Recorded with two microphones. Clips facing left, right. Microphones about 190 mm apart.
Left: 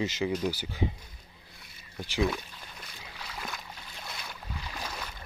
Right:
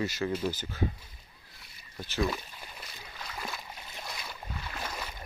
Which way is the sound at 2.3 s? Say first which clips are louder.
Left 1 dB; 5° right (ahead or behind).